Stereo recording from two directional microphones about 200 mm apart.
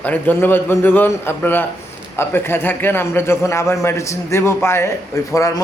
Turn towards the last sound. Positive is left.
turn(degrees=15)  # may be behind; listen again after turning